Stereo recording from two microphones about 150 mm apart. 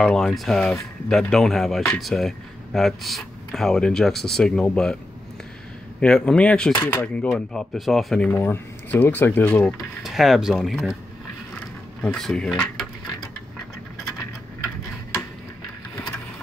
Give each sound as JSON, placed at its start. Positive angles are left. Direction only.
{"t": 0.0, "sound": "speech", "side_deg": 5}
{"t": 5.9, "sound": "speech", "side_deg": 5}
{"t": 7.3, "sound": "speech", "side_deg": 0}
{"t": 10.0, "sound": "speech", "side_deg": 0}
{"t": 12.0, "sound": "speech", "side_deg": 5}